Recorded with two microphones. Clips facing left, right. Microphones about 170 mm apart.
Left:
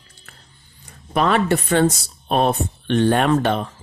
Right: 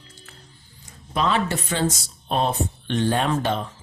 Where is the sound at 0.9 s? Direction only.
60° left (ahead or behind).